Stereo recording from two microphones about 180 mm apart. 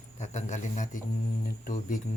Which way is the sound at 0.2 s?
40° left (ahead or behind).